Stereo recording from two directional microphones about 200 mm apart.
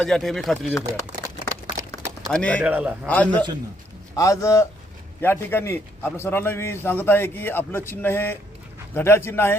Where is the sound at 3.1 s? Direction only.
5° left (ahead or behind).